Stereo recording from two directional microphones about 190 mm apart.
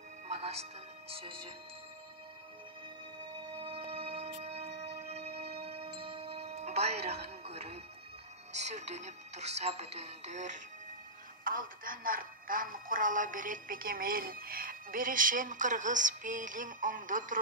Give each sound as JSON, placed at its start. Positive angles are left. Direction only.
{"t": 0.4, "sound": "speech", "side_deg": -30}
{"t": 3.5, "sound": "a sound", "side_deg": -30}
{"t": 8.5, "sound": "speech", "side_deg": -35}